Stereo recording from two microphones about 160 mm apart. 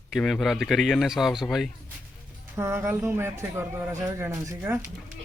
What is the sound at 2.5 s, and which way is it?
Speech, 15° right (ahead or behind).